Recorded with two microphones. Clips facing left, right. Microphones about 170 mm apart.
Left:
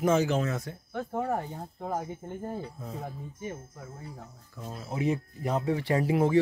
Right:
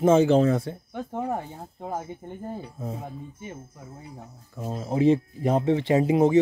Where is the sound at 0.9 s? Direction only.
15° right (ahead or behind).